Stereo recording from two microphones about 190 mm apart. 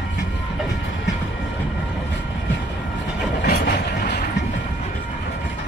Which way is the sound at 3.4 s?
50° left (ahead or behind).